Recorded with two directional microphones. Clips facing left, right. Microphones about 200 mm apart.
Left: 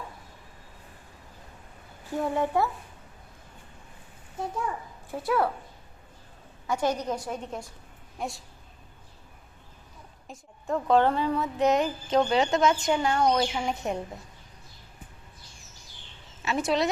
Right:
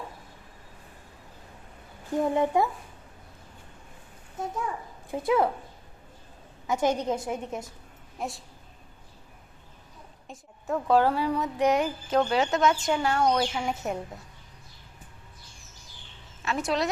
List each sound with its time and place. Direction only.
2.1 s speech: 20° right (ahead or behind)
4.4 s speech: centre (ahead or behind)
5.1 s speech: 20° right (ahead or behind)
6.8 s speech: 25° right (ahead or behind)
8.2 s speech: centre (ahead or behind)
10.2 s a woman's voice: centre (ahead or behind)
11.5 s a sound: 10° right (ahead or behind)
12.3 s speech: centre (ahead or behind)
16.4 s speech: centre (ahead or behind)